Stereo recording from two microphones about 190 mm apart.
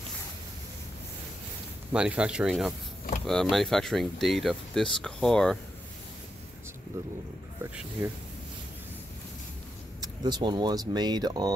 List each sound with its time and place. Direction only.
1.9 s speech: 5° right (ahead or behind)
9.9 s speech: 25° right (ahead or behind)